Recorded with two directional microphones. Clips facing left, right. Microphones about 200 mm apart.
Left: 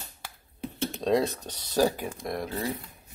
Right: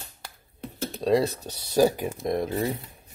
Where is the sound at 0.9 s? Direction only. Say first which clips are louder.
Right 3 dB; centre (ahead or behind); by 2.5 s 25° right (ahead or behind).